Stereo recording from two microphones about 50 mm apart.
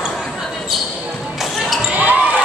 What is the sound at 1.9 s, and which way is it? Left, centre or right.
Basketball bounce, right.